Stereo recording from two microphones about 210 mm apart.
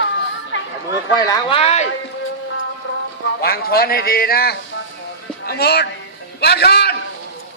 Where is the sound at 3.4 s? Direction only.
45° left (ahead or behind).